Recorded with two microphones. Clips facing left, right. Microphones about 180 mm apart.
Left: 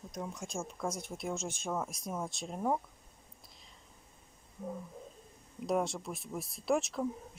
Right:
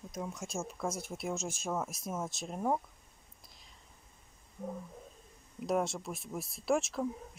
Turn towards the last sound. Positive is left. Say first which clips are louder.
# even
turn(degrees=0)  # may be behind; listen again after turning